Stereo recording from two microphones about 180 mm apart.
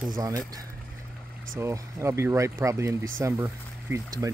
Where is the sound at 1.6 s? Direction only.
15° right (ahead or behind).